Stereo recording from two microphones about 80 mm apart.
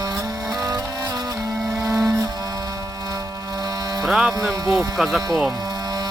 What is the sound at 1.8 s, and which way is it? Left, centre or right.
Music, right.